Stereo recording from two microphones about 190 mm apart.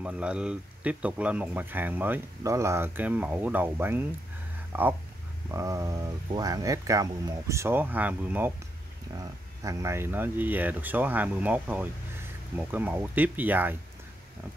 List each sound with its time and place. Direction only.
0.0 s speech: 5° right (ahead or behind)
9.6 s speech: 15° right (ahead or behind)